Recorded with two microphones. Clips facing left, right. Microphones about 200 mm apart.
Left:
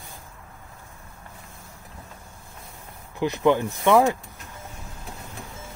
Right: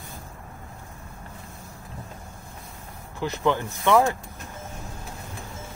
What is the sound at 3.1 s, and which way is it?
Speech, 15° left (ahead or behind).